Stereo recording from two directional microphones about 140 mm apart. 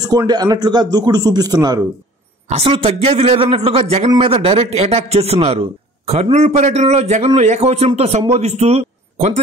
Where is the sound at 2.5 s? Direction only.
45° right (ahead or behind).